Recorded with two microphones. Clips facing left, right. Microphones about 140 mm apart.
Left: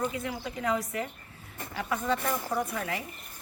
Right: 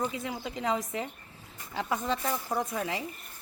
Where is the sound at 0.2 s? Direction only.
20° right (ahead or behind).